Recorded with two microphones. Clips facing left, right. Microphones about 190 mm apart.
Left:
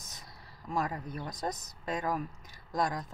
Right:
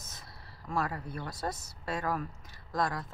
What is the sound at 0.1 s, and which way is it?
Speech, 15° left (ahead or behind).